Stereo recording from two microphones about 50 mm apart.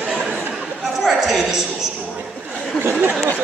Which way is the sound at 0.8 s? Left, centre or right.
Centre.